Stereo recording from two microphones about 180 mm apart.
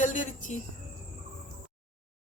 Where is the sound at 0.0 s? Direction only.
45° left (ahead or behind).